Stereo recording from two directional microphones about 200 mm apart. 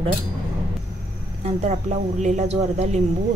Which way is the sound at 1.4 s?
35° right (ahead or behind).